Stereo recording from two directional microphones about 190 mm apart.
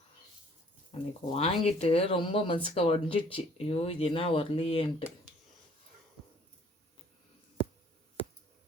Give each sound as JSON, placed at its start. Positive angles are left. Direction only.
{"t": 0.9, "sound": "speech", "side_deg": 35}